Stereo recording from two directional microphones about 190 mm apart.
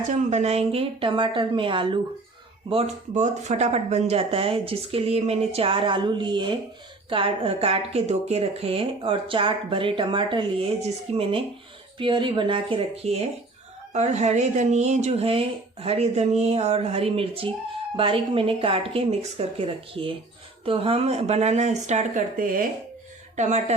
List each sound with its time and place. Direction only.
0.1 s a woman's voice: 40° right (ahead or behind)